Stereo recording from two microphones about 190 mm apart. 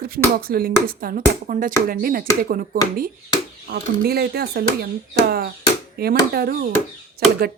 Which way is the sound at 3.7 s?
55° right (ahead or behind).